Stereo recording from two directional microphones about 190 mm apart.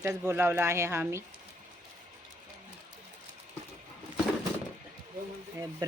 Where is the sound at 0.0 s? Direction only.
10° right (ahead or behind).